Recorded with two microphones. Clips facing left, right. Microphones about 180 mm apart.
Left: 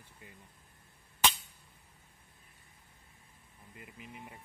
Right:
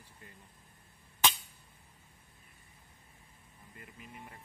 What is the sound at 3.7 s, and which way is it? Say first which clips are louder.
Speech: left 1 dB; 15° left (ahead or behind).